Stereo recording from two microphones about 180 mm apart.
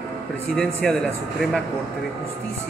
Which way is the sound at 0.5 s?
5° left (ahead or behind).